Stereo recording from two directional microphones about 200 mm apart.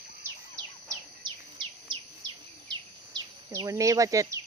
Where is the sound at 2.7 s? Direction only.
20° right (ahead or behind).